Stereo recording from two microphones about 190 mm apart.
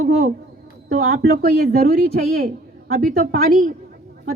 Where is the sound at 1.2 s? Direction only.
55° right (ahead or behind).